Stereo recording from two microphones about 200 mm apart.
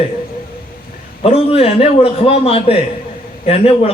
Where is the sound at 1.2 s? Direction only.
30° left (ahead or behind).